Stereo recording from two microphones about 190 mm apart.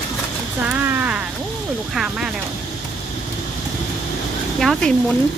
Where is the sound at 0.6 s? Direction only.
10° right (ahead or behind).